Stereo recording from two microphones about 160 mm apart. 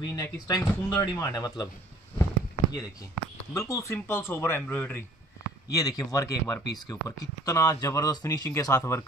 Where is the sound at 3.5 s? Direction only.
20° left (ahead or behind).